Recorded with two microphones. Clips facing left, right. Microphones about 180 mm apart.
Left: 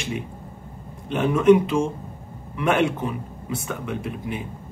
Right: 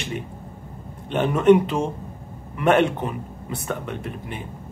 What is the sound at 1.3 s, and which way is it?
Speech, 40° right (ahead or behind).